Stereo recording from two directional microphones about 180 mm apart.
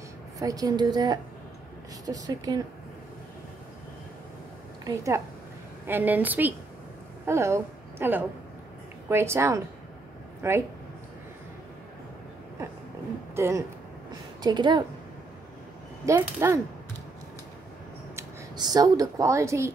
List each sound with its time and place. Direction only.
0.4 s a woman's voice: 20° right (ahead or behind)
4.8 s a woman's voice: 15° right (ahead or behind)
13.4 s a woman's voice: 15° right (ahead or behind)
16.1 s a woman's voice: 15° right (ahead or behind)
18.1 s speech: 20° right (ahead or behind)